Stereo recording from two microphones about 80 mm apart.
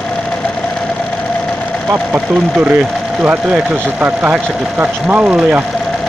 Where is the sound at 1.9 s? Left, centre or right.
Right.